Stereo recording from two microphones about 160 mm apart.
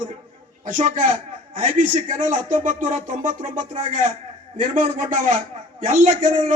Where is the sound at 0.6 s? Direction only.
55° right (ahead or behind).